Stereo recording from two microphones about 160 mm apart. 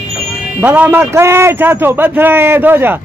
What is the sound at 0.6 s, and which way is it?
A man's voice, 10° right (ahead or behind).